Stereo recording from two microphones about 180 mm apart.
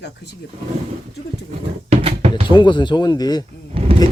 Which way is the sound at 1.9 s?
35° right (ahead or behind).